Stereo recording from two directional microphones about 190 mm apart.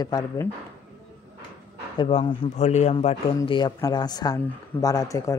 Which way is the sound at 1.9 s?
25° left (ahead or behind).